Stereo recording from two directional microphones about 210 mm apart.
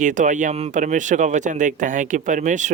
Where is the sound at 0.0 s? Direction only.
35° right (ahead or behind).